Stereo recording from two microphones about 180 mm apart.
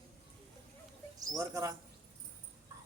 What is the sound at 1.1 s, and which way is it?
Speech, 20° right (ahead or behind).